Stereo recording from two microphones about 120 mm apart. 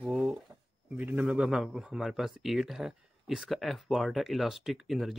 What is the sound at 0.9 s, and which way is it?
Speech, 10° right (ahead or behind).